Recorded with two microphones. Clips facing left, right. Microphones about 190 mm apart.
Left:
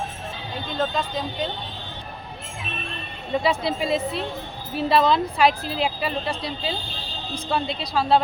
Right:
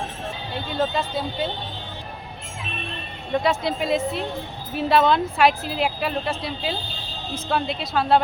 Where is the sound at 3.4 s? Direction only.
Centre (ahead or behind).